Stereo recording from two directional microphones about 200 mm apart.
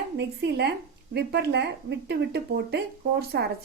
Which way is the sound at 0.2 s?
55° right (ahead or behind).